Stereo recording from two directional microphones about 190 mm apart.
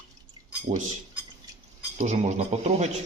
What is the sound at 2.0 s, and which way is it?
Speech, 35° right (ahead or behind).